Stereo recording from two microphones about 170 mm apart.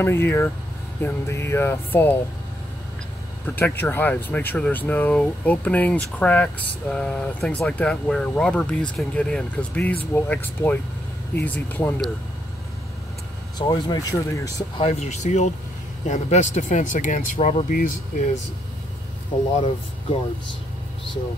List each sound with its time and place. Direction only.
0.0 s speech: 15° left (ahead or behind)
3.4 s speech: 10° left (ahead or behind)
13.6 s speech: 25° left (ahead or behind)
14.8 s speech: 40° left (ahead or behind)
19.5 s speech: 40° left (ahead or behind)